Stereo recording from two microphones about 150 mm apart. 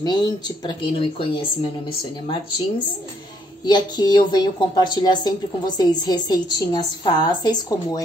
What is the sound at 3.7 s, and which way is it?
Speech, 30° left (ahead or behind).